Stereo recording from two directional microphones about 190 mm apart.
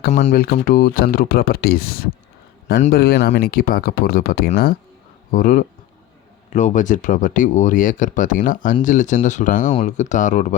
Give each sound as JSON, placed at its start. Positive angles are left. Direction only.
{"t": 0.1, "sound": "speech", "side_deg": 35}